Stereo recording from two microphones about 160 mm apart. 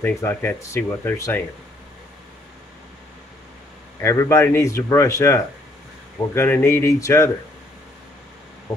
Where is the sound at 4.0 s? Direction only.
20° left (ahead or behind).